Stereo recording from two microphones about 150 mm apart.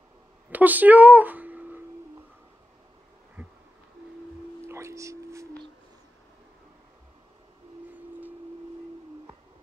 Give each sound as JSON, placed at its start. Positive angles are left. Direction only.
{"t": 0.5, "sound": "a sound", "side_deg": -10}
{"t": 3.4, "sound": "insect", "side_deg": -10}
{"t": 4.6, "sound": "whispering", "side_deg": -20}